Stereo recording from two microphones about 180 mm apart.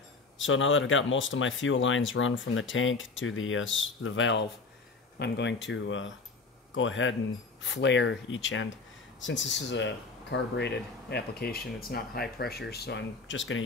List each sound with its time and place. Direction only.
0.4 s speech: 90° left
5.2 s speech: 75° left (ahead or behind)